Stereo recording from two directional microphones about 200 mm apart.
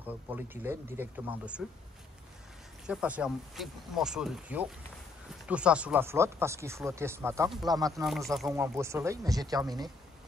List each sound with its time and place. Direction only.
0.0 s speech: 10° right (ahead or behind)
2.9 s speech: 5° right (ahead or behind)
8.0 s speech: centre (ahead or behind)
8.5 s speech: 15° right (ahead or behind)